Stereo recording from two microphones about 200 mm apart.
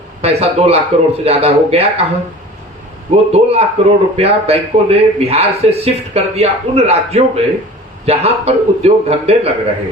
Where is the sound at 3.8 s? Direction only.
30° right (ahead or behind).